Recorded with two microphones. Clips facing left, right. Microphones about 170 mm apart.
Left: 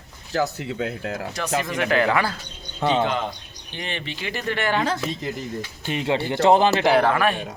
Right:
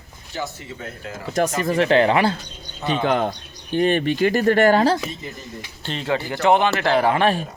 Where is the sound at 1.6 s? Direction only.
30° right (ahead or behind).